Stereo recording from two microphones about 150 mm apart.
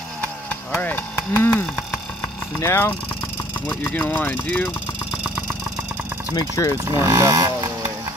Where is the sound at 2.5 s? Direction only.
15° left (ahead or behind).